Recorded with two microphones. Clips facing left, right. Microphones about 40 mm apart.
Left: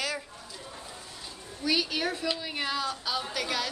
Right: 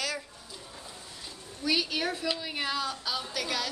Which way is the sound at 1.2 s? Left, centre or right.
Centre.